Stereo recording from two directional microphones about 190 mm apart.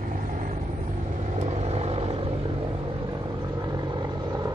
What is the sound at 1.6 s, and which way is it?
Vehicle, 35° right (ahead or behind).